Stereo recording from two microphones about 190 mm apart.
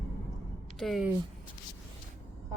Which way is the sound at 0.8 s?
Centre (ahead or behind).